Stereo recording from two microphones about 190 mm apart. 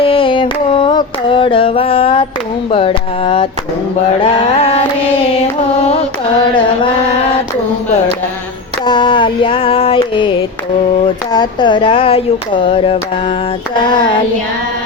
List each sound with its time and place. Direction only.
0.0 s music: 30° left (ahead or behind)
2.6 s carnatic music: 30° left (ahead or behind)
4.2 s a sound: 30° left (ahead or behind)
8.9 s carnatic music: 25° left (ahead or behind)